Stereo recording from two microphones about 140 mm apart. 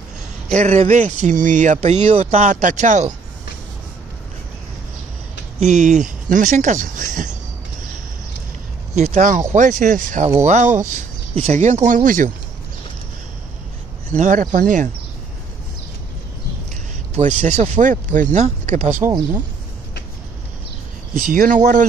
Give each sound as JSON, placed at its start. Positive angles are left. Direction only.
{"t": 0.5, "sound": "speech", "side_deg": -55}
{"t": 1.8, "sound": "speech", "side_deg": -50}
{"t": 5.6, "sound": "speech", "side_deg": -60}
{"t": 8.9, "sound": "speech", "side_deg": -60}
{"t": 14.1, "sound": "speech", "side_deg": -65}
{"t": 17.1, "sound": "speech", "side_deg": -55}
{"t": 21.1, "sound": "speech", "side_deg": -75}